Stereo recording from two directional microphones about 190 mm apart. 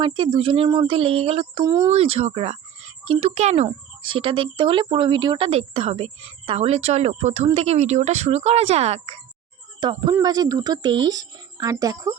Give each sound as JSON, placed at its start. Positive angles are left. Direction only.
{"t": 0.0, "sound": "speech", "side_deg": -25}
{"t": 1.6, "sound": "speech", "side_deg": -20}
{"t": 1.9, "sound": "speech", "side_deg": -30}
{"t": 9.8, "sound": "speech", "side_deg": -20}